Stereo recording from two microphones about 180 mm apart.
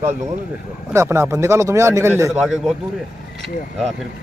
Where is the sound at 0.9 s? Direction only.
15° right (ahead or behind).